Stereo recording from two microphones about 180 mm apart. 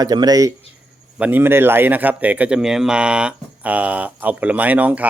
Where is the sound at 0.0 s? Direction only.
20° right (ahead or behind).